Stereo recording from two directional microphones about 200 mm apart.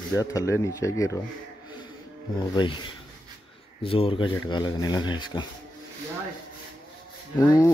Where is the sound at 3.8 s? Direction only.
25° left (ahead or behind).